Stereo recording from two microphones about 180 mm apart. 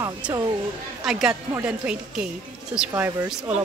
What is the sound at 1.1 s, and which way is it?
A woman's voice, 5° right (ahead or behind).